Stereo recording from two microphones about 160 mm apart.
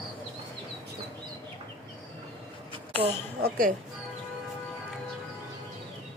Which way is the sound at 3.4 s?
60° right (ahead or behind).